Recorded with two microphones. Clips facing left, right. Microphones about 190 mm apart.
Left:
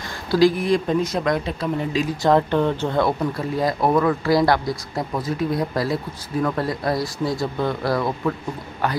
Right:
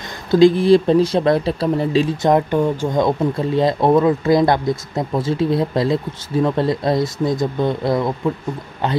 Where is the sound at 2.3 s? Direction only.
10° right (ahead or behind).